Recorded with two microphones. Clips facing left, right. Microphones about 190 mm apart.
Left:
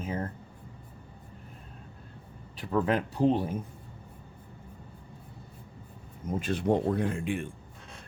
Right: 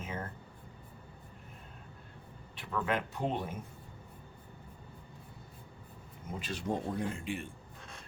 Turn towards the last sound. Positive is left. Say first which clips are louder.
# left 6 dB
turn(degrees=55)  # may be behind; listen again after turning